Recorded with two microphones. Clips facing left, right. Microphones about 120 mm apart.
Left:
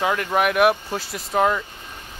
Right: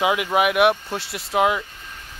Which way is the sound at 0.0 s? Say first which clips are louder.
Right 1 dB; 10° right (ahead or behind).